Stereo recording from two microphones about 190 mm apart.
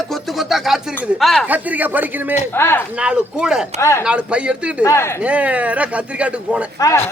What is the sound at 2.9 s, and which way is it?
Speech, 5° right (ahead or behind).